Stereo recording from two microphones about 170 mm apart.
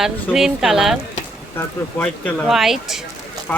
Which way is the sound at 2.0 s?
5° left (ahead or behind).